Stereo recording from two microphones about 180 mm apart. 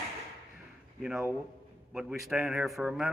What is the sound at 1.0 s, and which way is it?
Speech, 5° right (ahead or behind).